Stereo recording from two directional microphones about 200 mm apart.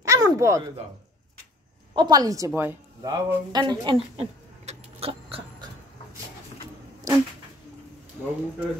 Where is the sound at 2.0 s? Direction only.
20° right (ahead or behind).